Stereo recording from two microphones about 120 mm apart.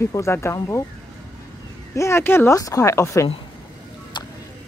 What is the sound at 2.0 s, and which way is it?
Speech, 20° left (ahead or behind).